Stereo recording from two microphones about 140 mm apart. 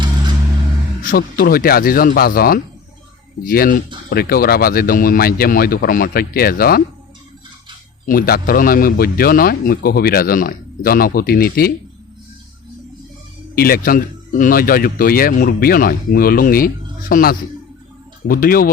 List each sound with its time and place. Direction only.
1.0 s speech: 90° left
8.0 s speech: 90° left
13.6 s speech: 90° left